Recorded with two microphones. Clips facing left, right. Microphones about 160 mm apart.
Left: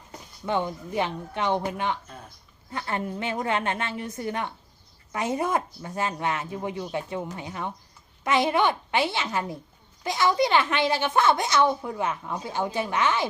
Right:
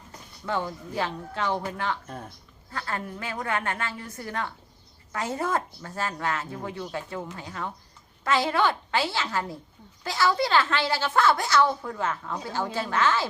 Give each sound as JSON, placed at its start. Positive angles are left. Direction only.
{"t": 0.4, "sound": "a woman's voice", "side_deg": 20}